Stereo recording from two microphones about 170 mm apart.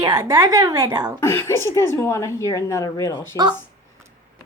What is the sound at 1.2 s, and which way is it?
A woman's voice, 15° left (ahead or behind).